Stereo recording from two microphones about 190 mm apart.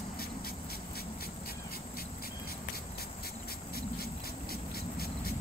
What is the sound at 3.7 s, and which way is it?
Vehicle, 55° left (ahead or behind).